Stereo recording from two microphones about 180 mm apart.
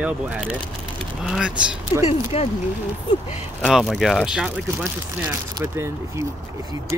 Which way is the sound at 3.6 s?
Centre (ahead or behind).